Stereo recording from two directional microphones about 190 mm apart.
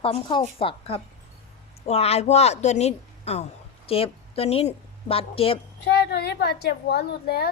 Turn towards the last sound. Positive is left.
turn(degrees=55)  # may be behind; listen again after turning